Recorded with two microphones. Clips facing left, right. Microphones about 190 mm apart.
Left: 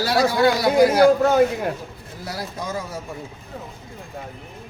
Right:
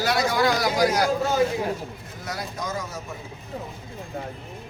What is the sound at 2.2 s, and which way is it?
Speech, 30° left (ahead or behind).